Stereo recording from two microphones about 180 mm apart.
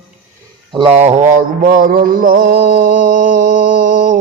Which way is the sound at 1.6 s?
50° right (ahead or behind).